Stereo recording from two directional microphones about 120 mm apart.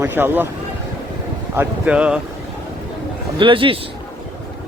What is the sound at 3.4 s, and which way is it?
Speech, 45° right (ahead or behind).